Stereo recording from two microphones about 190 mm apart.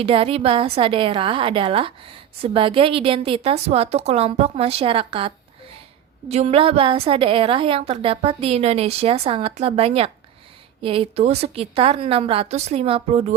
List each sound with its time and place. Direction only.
0.0 s a woman's voice: 30° right (ahead or behind)